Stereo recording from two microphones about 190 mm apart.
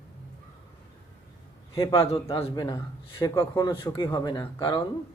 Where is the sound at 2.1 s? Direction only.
30° left (ahead or behind).